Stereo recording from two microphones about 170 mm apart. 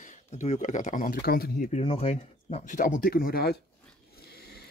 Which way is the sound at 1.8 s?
35° left (ahead or behind).